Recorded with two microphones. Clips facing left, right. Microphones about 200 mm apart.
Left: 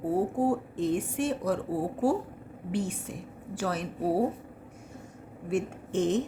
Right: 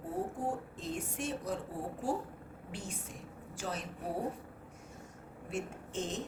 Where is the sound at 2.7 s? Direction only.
65° left (ahead or behind).